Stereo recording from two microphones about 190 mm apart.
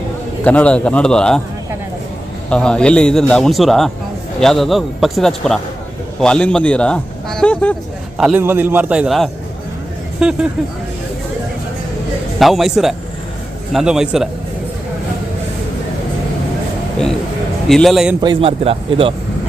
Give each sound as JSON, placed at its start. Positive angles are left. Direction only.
{"t": 0.4, "sound": "a man's voice", "side_deg": 5}
{"t": 2.5, "sound": "a man's voice", "side_deg": 5}
{"t": 8.2, "sound": "a man's voice", "side_deg": -10}
{"t": 12.4, "sound": "a man's voice", "side_deg": 0}
{"t": 17.7, "sound": "a man's voice", "side_deg": 0}
{"t": 18.2, "sound": "speech", "side_deg": -25}